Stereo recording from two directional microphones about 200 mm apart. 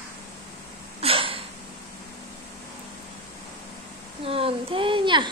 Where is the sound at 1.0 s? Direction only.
25° right (ahead or behind).